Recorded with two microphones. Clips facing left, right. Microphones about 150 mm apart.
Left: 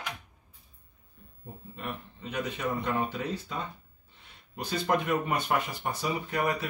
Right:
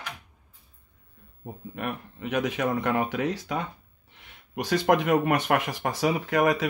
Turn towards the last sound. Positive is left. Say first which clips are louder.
# right 6 dB
turn(degrees=-90)